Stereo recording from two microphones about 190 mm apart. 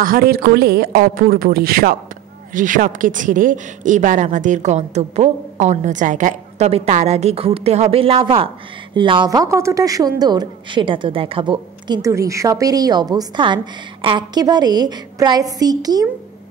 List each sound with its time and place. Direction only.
0.0 s a woman's voice: 50° right (ahead or behind); by 16.1 s 20° right (ahead or behind)